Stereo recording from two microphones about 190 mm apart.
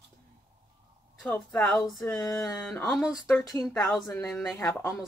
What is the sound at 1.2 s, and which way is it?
Speech, 5° left (ahead or behind).